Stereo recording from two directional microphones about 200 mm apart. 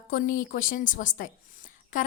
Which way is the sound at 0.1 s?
45° left (ahead or behind).